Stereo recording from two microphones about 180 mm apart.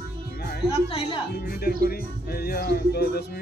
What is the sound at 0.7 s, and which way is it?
Speech, 30° left (ahead or behind).